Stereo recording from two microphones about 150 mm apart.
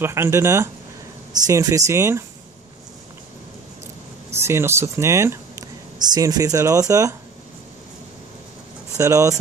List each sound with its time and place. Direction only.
0.0 s speech: 15° right (ahead or behind)
4.3 s speech: 15° right (ahead or behind)
8.9 s speech: 20° right (ahead or behind)